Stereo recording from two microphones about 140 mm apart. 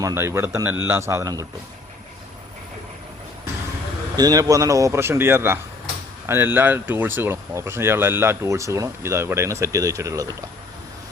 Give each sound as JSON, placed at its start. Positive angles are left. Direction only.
{"t": 0.0, "sound": "speech", "side_deg": -20}
{"t": 4.2, "sound": "speech", "side_deg": -25}